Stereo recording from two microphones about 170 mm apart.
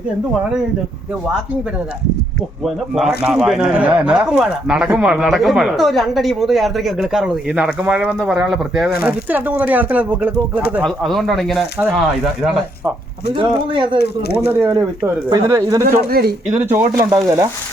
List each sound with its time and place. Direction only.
2.6 s speech: centre (ahead or behind)
13.3 s speech: 30° right (ahead or behind)
14.4 s speech: 15° right (ahead or behind)
15.9 s speech: 65° right (ahead or behind)
16.5 s speech: 10° right (ahead or behind)